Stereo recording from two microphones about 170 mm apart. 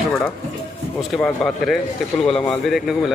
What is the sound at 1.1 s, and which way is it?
Speech, 5° left (ahead or behind).